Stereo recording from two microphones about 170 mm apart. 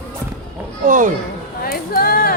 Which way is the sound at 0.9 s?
50° right (ahead or behind).